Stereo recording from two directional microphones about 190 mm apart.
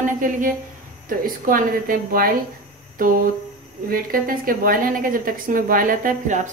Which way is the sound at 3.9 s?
50° right (ahead or behind).